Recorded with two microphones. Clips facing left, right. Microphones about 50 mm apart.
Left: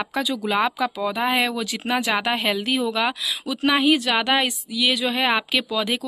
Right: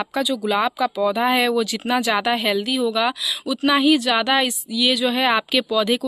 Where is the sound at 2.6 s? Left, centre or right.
Left.